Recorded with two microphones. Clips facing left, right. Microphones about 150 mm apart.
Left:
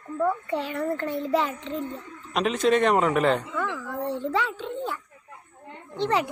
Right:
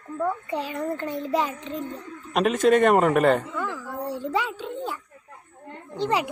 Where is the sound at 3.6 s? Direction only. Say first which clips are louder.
Left 1 dB; 10° right (ahead or behind).